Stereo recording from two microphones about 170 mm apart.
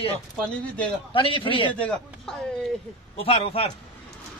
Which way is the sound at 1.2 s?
30° left (ahead or behind).